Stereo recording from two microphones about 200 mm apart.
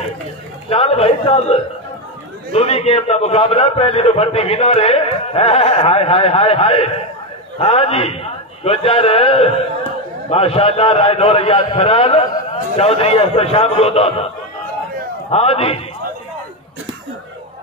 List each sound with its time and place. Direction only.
0.7 s a man's voice: 30° left (ahead or behind)
15.3 s a man's voice: 30° left (ahead or behind)